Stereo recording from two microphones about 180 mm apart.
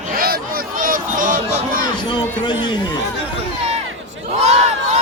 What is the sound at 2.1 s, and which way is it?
Speech, 25° left (ahead or behind).